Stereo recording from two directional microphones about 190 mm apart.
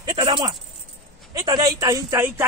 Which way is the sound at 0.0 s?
25° right (ahead or behind).